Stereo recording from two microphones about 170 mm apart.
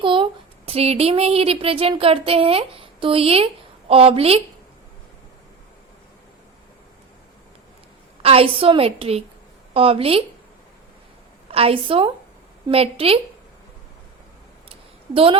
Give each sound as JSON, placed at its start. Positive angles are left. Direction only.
{"t": 0.0, "sound": "speech", "side_deg": -30}
{"t": 8.2, "sound": "a woman's voice", "side_deg": -35}
{"t": 11.5, "sound": "a woman's voice", "side_deg": -35}
{"t": 14.7, "sound": "a sound", "side_deg": -30}